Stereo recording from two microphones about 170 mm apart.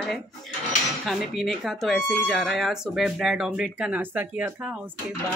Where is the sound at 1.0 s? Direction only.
Centre (ahead or behind).